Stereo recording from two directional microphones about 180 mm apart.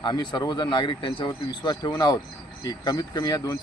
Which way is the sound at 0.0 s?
25° left (ahead or behind).